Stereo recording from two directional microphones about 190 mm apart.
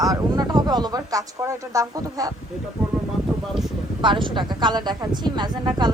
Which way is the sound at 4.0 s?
25° right (ahead or behind).